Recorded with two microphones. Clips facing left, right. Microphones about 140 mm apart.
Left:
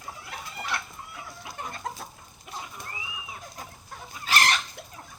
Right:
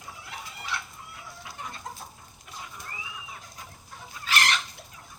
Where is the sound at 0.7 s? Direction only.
55° left (ahead or behind).